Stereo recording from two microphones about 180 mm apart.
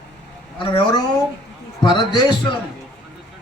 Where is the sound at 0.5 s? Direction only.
25° left (ahead or behind).